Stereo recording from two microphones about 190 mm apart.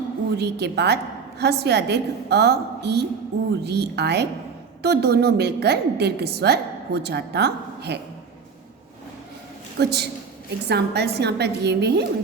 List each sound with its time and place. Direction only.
0.3 s a woman's voice: 60° right (ahead or behind)
9.7 s a woman's voice: 60° right (ahead or behind)